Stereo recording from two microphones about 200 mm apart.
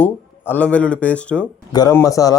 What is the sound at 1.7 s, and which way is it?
Speech, 20° left (ahead or behind).